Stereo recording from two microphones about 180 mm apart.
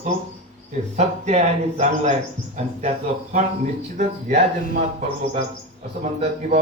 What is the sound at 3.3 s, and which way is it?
A man's voice, 40° right (ahead or behind).